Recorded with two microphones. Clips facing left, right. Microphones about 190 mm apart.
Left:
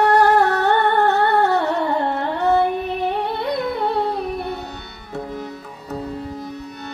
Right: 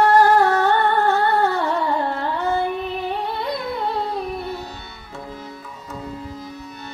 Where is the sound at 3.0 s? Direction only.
60° left (ahead or behind).